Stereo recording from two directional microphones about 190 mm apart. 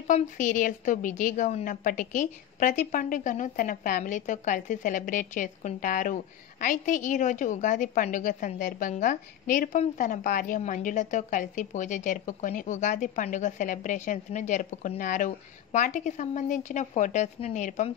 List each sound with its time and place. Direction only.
0.0 s a woman's voice: 40° left (ahead or behind)